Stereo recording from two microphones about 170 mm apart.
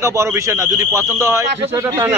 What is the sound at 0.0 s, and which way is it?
Speech, 15° right (ahead or behind).